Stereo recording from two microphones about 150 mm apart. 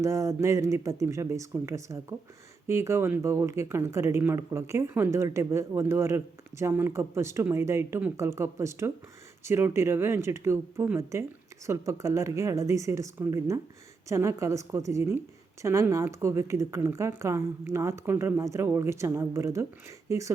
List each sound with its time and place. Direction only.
0.0 s speech: 20° right (ahead or behind)